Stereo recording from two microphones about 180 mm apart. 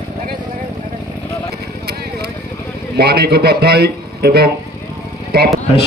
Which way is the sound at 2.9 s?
60° right (ahead or behind).